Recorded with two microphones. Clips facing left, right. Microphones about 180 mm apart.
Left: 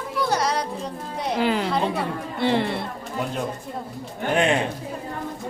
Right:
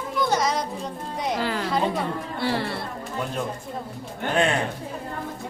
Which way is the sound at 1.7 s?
Centre (ahead or behind).